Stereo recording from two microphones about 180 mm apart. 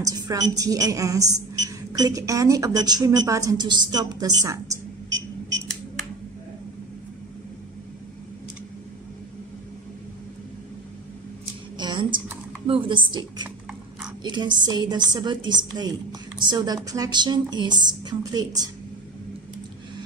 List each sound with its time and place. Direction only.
0.0 s a woman's voice: 20° right (ahead or behind)
11.8 s typing: 25° right (ahead or behind)
12.6 s a woman's voice: 30° right (ahead or behind)